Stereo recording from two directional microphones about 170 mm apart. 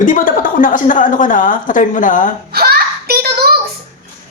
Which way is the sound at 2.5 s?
65° right (ahead or behind).